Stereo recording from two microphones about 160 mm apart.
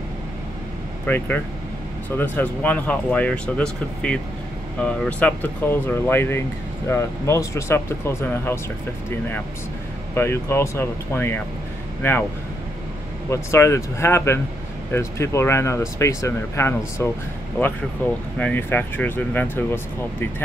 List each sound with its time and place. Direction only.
1.0 s speech: 10° left (ahead or behind)
10.1 s speech: 15° left (ahead or behind)
13.3 s speech: 15° left (ahead or behind)